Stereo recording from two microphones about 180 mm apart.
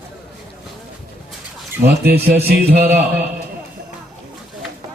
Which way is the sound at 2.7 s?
10° right (ahead or behind).